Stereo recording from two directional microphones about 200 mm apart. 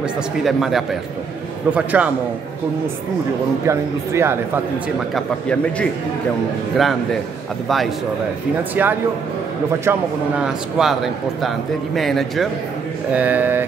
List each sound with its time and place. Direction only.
0.4 s speech: centre (ahead or behind)
3.6 s speech: 15° right (ahead or behind)
5.1 s speech: 5° left (ahead or behind)
7.6 s speech: centre (ahead or behind)